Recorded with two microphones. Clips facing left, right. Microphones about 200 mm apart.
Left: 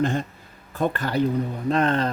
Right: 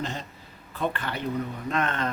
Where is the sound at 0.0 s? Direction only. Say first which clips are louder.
Left 10 dB; 50° left (ahead or behind).